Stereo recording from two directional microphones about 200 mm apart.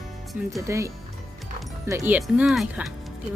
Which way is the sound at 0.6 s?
15° right (ahead or behind).